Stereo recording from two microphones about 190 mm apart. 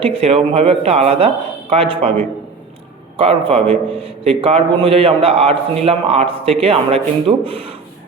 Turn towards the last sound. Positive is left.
turn(degrees=-30)  # may be behind; listen again after turning